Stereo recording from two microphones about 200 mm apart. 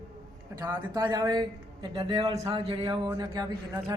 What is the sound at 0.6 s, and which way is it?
A man's voice, 15° right (ahead or behind).